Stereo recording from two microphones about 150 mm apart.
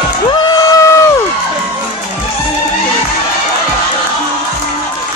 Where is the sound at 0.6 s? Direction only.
25° left (ahead or behind).